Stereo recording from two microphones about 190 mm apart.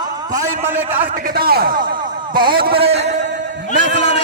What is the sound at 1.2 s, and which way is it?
A man's voice, 50° right (ahead or behind).